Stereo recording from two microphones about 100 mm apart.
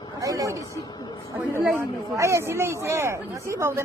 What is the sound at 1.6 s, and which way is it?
Speech, 15° right (ahead or behind).